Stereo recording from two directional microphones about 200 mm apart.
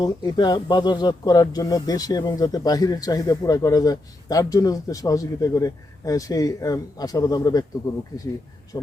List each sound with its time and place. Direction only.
0.0 s speech: 20° left (ahead or behind)
8.7 s speech: 20° left (ahead or behind)